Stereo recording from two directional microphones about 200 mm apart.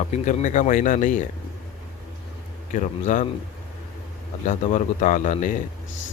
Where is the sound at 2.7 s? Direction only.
40° left (ahead or behind).